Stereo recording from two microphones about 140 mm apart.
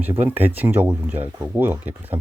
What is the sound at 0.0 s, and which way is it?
Speech, 15° right (ahead or behind).